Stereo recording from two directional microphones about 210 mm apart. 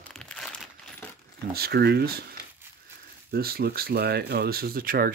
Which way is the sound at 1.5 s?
50° right (ahead or behind).